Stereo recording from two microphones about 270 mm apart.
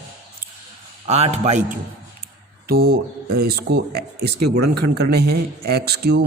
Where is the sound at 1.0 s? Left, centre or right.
Right.